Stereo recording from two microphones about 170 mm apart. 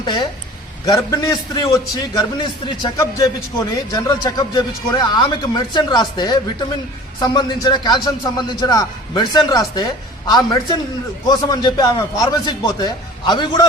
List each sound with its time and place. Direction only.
0.0 s a man's voice: 25° left (ahead or behind)
3.9 s a man's voice: 20° left (ahead or behind)